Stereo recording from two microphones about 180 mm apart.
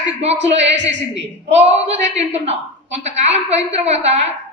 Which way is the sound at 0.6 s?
80° right.